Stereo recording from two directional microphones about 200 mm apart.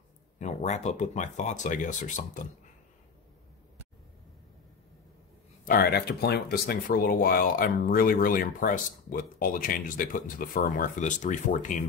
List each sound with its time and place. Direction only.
0.4 s speech: 35° left (ahead or behind)
5.7 s speech: 50° left (ahead or behind)